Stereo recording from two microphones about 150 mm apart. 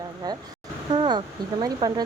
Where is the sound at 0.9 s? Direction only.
30° right (ahead or behind).